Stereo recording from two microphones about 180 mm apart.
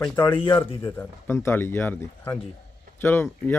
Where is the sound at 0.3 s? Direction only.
30° left (ahead or behind).